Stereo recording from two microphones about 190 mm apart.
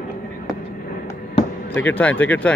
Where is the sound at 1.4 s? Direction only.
25° left (ahead or behind).